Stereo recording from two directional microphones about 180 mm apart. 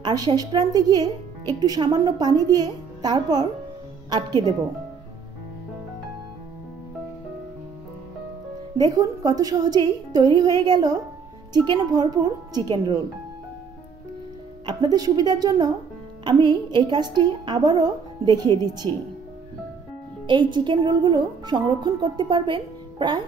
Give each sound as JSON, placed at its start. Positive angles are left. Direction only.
{"t": 0.0, "sound": "a woman's voice", "side_deg": -25}
{"t": 8.7, "sound": "a woman's voice", "side_deg": -20}
{"t": 14.7, "sound": "a woman's voice", "side_deg": -20}
{"t": 20.2, "sound": "a woman's voice", "side_deg": -25}